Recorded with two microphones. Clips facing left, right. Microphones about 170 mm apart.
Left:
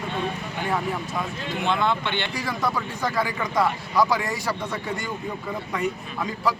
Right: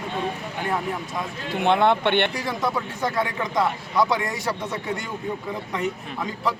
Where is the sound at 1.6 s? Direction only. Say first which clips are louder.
Right 5 dB; 60° right (ahead or behind).